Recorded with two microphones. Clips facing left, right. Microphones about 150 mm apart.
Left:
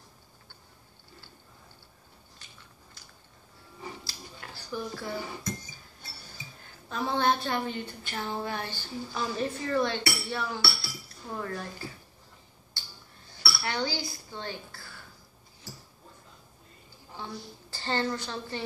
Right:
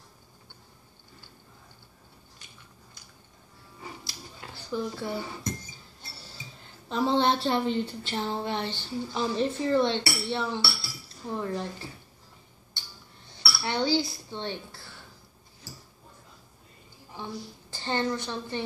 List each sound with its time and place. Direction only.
4.0 s a sound: 20° right (ahead or behind)
6.9 s speech: 20° right (ahead or behind)
13.3 s dishes: 20° right (ahead or behind)
17.2 s a woman's voice: 15° right (ahead or behind)